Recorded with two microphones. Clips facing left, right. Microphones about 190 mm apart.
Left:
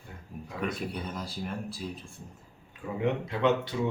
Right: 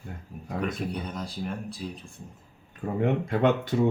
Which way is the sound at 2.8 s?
50° right (ahead or behind).